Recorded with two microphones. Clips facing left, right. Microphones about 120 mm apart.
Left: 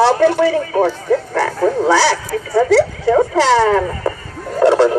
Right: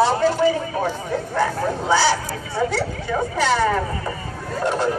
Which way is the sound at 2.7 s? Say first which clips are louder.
Left 12 dB; 90° left.